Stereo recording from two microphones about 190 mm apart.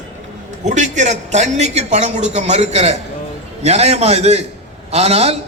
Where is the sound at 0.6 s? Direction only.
40° right (ahead or behind).